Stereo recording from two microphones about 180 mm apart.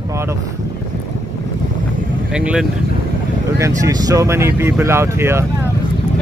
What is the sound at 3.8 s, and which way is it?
Speech, 20° right (ahead or behind).